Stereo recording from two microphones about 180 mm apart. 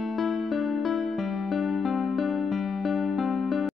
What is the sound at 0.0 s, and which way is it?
Music, centre (ahead or behind).